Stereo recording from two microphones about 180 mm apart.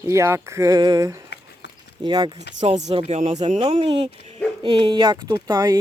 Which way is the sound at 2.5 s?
40° right (ahead or behind).